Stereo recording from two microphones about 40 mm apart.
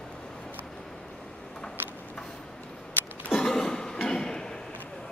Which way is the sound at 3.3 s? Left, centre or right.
Centre.